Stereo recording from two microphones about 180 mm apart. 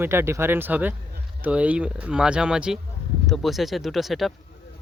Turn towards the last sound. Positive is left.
turn(degrees=0)  # may be behind; listen again after turning